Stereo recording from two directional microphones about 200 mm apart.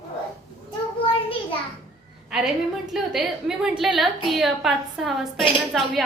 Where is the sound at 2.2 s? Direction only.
Centre (ahead or behind).